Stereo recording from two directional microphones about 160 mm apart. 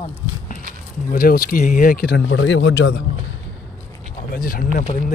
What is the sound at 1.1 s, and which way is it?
Speech, 65° left (ahead or behind).